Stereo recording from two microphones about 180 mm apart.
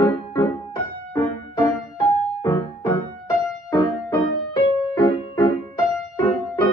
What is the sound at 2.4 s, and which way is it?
Music, 20° left (ahead or behind).